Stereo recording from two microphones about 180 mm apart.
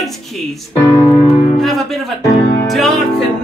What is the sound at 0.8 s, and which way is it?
Music, 15° left (ahead or behind).